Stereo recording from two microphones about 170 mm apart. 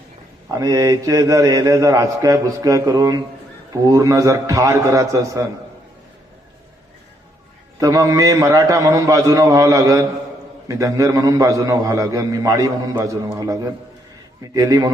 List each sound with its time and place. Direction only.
0.4 s a man's voice: 20° right (ahead or behind)
7.8 s a man's voice: 20° right (ahead or behind)